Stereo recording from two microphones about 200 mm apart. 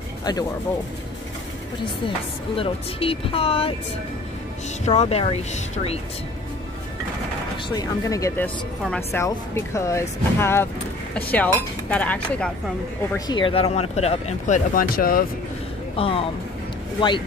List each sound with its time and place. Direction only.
0.2 s speech: 20° left (ahead or behind)
2.0 s speech: 25° left (ahead or behind)
4.8 s speech: 30° left (ahead or behind)
7.7 s speech: 15° left (ahead or behind)
13.3 s speech: 25° left (ahead or behind); by 15.2 s 45° left (ahead or behind)
16.0 s speech: 30° left (ahead or behind)